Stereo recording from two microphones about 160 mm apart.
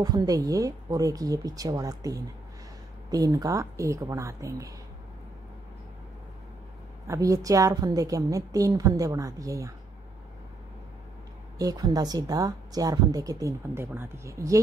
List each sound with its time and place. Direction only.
0.0 s speech: 25° right (ahead or behind)
7.1 s speech: 20° right (ahead or behind)
11.5 s speech: 25° right (ahead or behind)